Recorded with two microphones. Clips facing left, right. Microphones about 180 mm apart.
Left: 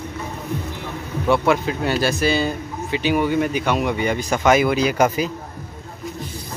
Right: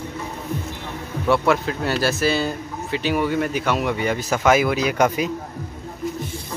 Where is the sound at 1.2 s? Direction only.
Centre (ahead or behind).